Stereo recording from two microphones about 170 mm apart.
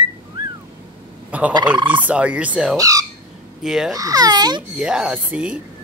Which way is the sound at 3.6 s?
Centre (ahead or behind).